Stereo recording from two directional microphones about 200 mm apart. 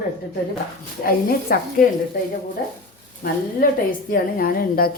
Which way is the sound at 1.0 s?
45° left (ahead or behind).